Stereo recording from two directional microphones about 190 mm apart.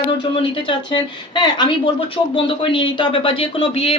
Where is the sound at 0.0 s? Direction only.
30° left (ahead or behind).